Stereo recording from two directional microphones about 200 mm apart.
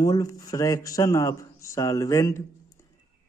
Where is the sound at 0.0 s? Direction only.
15° left (ahead or behind).